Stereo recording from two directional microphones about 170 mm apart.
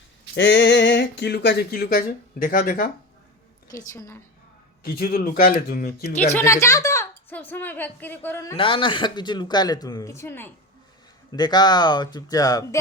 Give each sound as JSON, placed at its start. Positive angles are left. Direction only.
{"t": 0.3, "sound": "speech", "side_deg": 90}
{"t": 3.9, "sound": "a woman's voice", "side_deg": 15}
{"t": 4.8, "sound": "speech", "side_deg": 60}
{"t": 6.3, "sound": "a woman's voice", "side_deg": 15}
{"t": 8.5, "sound": "a woman's voice", "side_deg": 30}
{"t": 11.3, "sound": "a woman's voice", "side_deg": 25}